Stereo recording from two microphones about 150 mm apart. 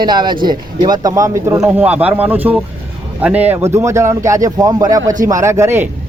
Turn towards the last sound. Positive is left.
turn(degrees=-20)  # may be behind; listen again after turning